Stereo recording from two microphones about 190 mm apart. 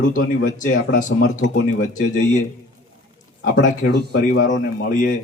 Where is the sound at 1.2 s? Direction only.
90° left.